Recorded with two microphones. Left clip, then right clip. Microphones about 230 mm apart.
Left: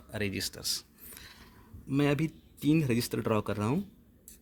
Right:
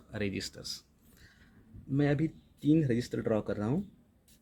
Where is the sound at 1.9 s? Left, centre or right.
Left.